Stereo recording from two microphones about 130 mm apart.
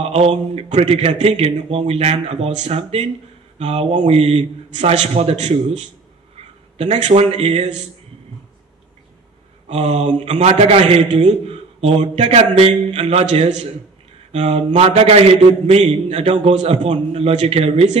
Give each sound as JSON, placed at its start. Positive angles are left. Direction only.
{"t": 0.0, "sound": "a man's voice", "side_deg": -50}
{"t": 9.7, "sound": "a man's voice", "side_deg": -55}